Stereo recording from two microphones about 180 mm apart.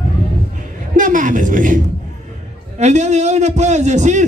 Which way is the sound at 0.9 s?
50° right (ahead or behind).